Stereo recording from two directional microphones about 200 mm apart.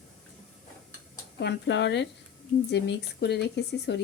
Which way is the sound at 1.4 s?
60° left (ahead or behind).